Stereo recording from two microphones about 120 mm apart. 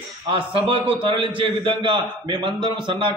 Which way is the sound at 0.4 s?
50° right (ahead or behind).